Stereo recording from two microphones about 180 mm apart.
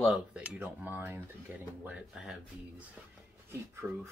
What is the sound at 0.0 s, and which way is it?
Speech, 5° right (ahead or behind).